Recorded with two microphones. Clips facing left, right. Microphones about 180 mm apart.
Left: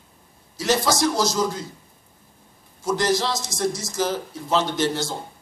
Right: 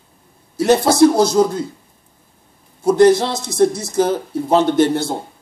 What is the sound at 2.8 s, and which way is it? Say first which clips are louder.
Speech: right 10 dB; 60° right (ahead or behind).